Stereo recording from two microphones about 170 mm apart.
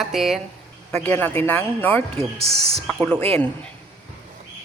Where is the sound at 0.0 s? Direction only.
Centre (ahead or behind).